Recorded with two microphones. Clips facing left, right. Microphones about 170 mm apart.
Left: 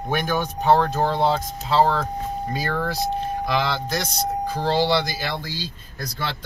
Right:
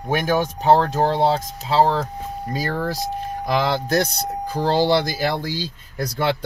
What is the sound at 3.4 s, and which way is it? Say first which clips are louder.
Speech: right 6 dB; 45° right (ahead or behind).